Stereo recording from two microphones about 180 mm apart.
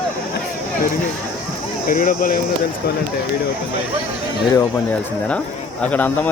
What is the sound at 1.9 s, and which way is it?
Speech, 50° left (ahead or behind).